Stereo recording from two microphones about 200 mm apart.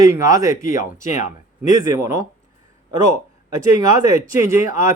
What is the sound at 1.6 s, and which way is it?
Speech, 15° right (ahead or behind).